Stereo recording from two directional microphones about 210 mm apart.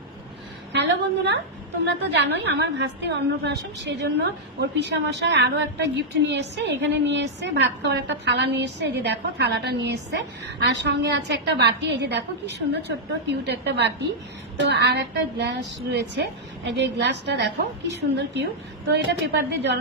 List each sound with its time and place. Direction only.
0.7 s a woman's voice: 55° right (ahead or behind)